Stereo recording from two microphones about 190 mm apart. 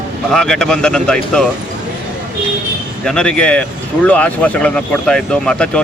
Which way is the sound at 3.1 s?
5° left (ahead or behind).